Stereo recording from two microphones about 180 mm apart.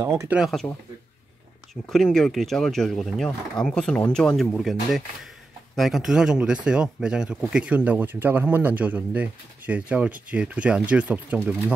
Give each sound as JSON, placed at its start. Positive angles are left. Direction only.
{"t": 0.0, "sound": "speech", "side_deg": -15}
{"t": 0.4, "sound": "speech", "side_deg": 0}
{"t": 1.9, "sound": "speech", "side_deg": 0}